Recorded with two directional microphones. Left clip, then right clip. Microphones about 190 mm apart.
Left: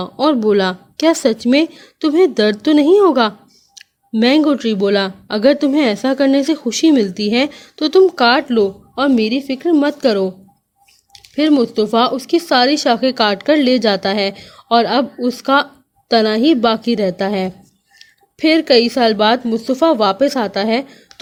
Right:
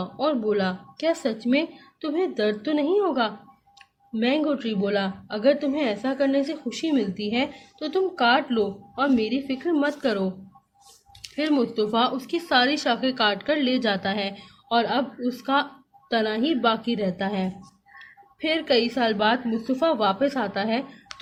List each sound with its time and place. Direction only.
0.0 s speech: 50° left (ahead or behind)